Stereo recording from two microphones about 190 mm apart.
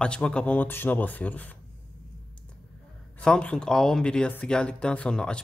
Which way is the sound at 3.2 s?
5° left (ahead or behind).